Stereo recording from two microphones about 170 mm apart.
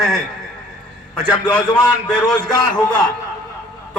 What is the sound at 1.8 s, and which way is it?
Speech, 25° left (ahead or behind).